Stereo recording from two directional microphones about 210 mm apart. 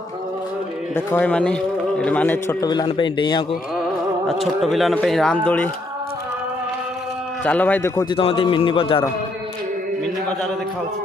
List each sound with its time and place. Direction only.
0.9 s a man's voice: 5° left (ahead or behind)
4.3 s speech: centre (ahead or behind)
7.4 s speech: 5° left (ahead or behind)
8.1 s a man's voice: 25° left (ahead or behind)